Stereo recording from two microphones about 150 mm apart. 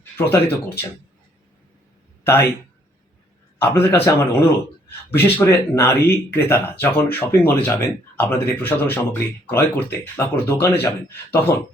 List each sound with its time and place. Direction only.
0.2 s speech: 15° left (ahead or behind)
2.2 s speech: 15° left (ahead or behind)
3.6 s speech: 15° left (ahead or behind)